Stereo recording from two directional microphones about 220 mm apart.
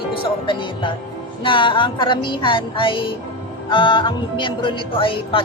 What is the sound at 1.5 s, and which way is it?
Speech, 20° left (ahead or behind).